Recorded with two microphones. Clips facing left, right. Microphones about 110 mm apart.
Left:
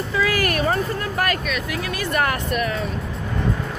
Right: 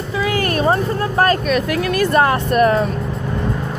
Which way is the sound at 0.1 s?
25° right (ahead or behind).